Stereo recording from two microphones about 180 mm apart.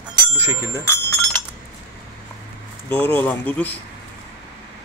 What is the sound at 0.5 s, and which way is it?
Speech, 15° left (ahead or behind).